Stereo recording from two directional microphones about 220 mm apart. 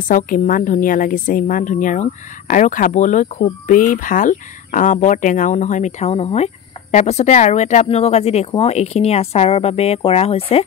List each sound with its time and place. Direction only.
0.1 s a woman's voice: 40° left (ahead or behind)